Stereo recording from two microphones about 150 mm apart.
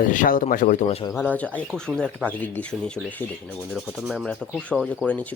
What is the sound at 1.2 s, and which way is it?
Speech, 10° left (ahead or behind).